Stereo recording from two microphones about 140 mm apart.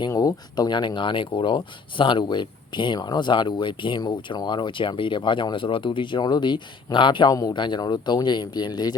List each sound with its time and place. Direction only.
0.1 s speech: 25° left (ahead or behind)